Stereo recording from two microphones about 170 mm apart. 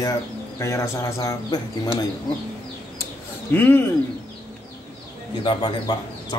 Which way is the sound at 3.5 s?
10° left (ahead or behind).